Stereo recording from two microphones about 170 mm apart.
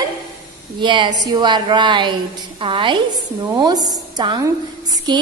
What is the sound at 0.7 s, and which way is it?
A woman's voice, 25° right (ahead or behind).